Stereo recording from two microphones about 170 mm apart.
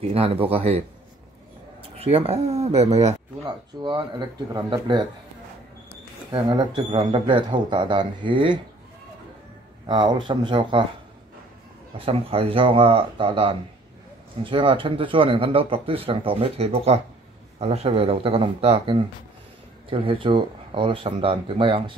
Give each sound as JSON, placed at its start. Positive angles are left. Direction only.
{"t": 0.0, "sound": "speech", "side_deg": -35}
{"t": 3.4, "sound": "speech", "side_deg": -25}
{"t": 6.3, "sound": "speech", "side_deg": -25}
{"t": 9.8, "sound": "speech", "side_deg": -25}
{"t": 12.0, "sound": "speech", "side_deg": -35}